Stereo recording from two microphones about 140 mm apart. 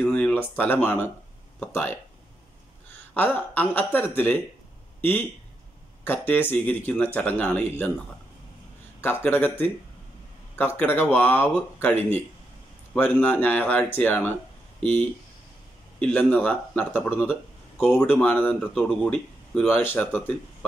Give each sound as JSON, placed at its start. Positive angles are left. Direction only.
{"t": 0.0, "sound": "speech", "side_deg": 10}
{"t": 3.2, "sound": "speech", "side_deg": 15}
{"t": 6.0, "sound": "speech", "side_deg": 15}
{"t": 9.2, "sound": "speech", "side_deg": 15}
{"t": 17.3, "sound": "a sound", "side_deg": -5}
{"t": 17.9, "sound": "speech", "side_deg": 15}
{"t": 19.7, "sound": "speech", "side_deg": 15}